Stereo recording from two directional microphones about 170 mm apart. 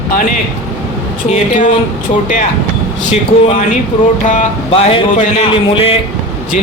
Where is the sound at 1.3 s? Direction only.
50° left (ahead or behind).